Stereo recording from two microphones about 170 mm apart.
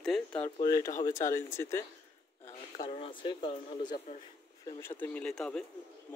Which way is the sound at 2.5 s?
35° left (ahead or behind).